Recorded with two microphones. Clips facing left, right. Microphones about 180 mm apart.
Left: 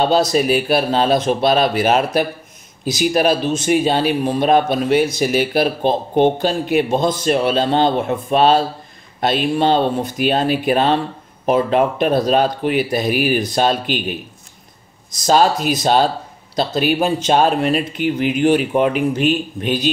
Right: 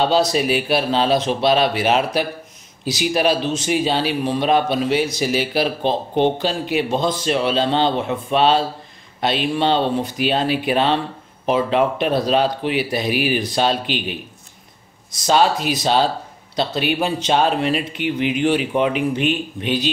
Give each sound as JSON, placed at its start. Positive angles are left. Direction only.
{"t": 0.0, "sound": "speech", "side_deg": 45}
{"t": 15.2, "sound": "speech", "side_deg": 40}